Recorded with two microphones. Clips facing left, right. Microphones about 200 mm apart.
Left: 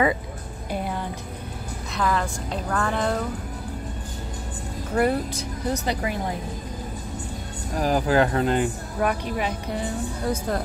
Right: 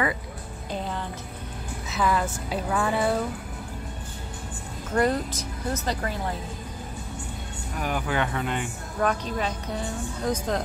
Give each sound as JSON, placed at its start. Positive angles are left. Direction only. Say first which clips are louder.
{"t": 0.7, "sound": "music", "louder": "left 3 dB", "side_deg": 10}
{"t": 2.0, "sound": "a woman's voice", "louder": "even", "side_deg": -5}
{"t": 4.9, "sound": "speech", "louder": "left 1 dB", "side_deg": 10}
{"t": 7.7, "sound": "speech", "louder": "left 7 dB", "side_deg": 35}
{"t": 9.0, "sound": "speech", "louder": "left 1 dB", "side_deg": 10}
{"t": 10.2, "sound": "speech", "louder": "even", "side_deg": 10}